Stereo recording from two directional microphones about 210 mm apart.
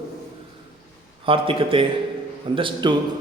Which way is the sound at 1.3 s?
25° right (ahead or behind).